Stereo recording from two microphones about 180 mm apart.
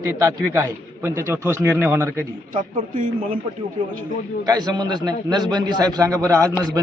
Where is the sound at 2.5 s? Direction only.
45° right (ahead or behind).